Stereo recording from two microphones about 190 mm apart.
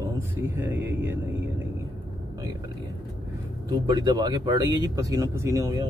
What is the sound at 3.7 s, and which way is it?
Speech, 20° right (ahead or behind).